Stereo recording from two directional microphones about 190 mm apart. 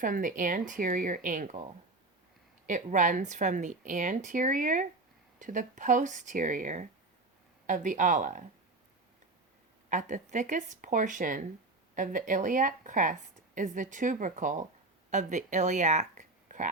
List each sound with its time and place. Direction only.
0.0 s a woman's voice: 45° right (ahead or behind)
2.6 s a woman's voice: 40° right (ahead or behind)
9.9 s a woman's voice: 40° right (ahead or behind)